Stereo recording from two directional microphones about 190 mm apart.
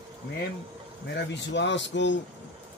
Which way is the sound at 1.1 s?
65° left (ahead or behind).